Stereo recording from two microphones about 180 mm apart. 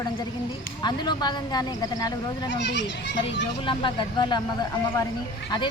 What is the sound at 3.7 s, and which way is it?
Speech, 25° left (ahead or behind).